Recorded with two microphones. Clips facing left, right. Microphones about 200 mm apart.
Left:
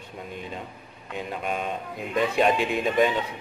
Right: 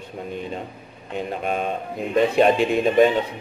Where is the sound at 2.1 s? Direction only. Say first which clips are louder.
Right 5 dB; 35° right (ahead or behind).